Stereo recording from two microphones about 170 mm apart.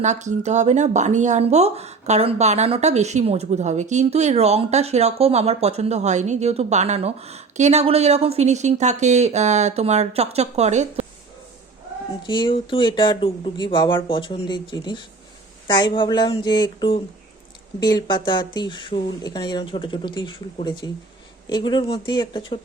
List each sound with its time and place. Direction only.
0.0 s speech: 45° right (ahead or behind)
12.2 s speech: 25° left (ahead or behind)